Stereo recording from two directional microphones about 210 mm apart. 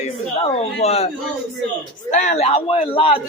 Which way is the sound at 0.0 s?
30° left (ahead or behind).